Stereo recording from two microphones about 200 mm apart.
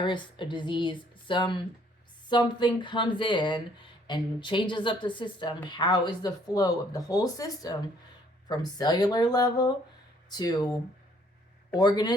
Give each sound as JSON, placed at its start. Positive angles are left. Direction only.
{"t": 0.0, "sound": "speech", "side_deg": 25}